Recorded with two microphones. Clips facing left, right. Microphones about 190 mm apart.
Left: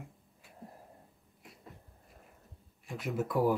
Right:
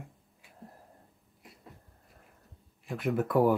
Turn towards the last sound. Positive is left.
turn(degrees=-55)  # may be behind; listen again after turning